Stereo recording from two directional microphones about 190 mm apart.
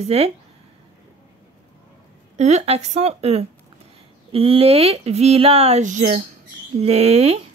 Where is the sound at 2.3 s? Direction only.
35° right (ahead or behind).